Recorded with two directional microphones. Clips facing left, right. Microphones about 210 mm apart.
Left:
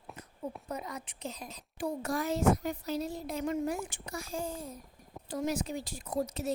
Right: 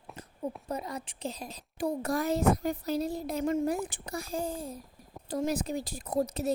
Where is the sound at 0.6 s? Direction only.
30° right (ahead or behind).